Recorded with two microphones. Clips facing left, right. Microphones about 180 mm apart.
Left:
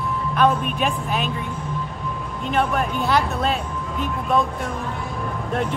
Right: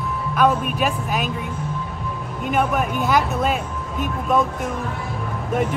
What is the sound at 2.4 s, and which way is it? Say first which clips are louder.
Speech: right 1 dB; 5° right (ahead or behind).